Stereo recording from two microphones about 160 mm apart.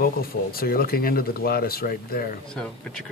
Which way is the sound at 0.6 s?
65° left (ahead or behind).